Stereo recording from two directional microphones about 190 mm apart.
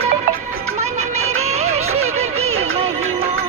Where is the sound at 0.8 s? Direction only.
35° right (ahead or behind).